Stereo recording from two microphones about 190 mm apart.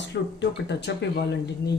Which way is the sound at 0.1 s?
65° left (ahead or behind).